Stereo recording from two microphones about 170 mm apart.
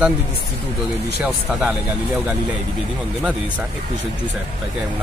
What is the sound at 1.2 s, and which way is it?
Speech, 5° right (ahead or behind).